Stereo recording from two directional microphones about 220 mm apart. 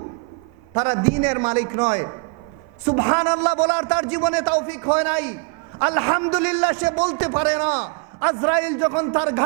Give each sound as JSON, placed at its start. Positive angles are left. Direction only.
{"t": 0.9, "sound": "a man's voice", "side_deg": -15}